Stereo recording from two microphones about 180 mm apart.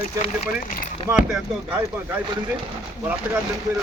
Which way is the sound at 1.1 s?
5° right (ahead or behind).